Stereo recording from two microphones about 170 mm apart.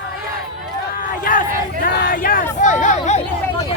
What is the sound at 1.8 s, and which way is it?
Hubbub, 60° left (ahead or behind).